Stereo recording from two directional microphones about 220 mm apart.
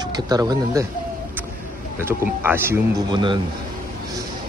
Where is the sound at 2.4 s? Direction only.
10° right (ahead or behind).